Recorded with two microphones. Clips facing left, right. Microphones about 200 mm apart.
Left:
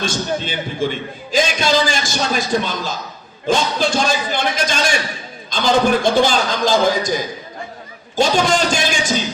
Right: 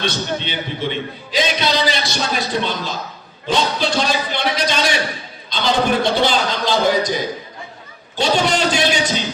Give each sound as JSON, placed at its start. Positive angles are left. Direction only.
{"t": 0.0, "sound": "a man's voice", "side_deg": 45}